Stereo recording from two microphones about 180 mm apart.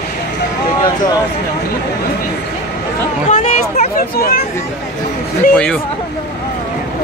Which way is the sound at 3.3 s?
40° left (ahead or behind).